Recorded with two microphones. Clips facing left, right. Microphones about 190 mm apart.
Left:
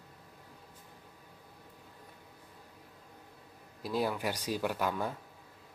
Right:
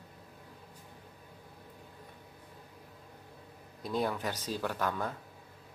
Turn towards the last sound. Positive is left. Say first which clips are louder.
# left 1 dB
turn(degrees=10)  # may be behind; listen again after turning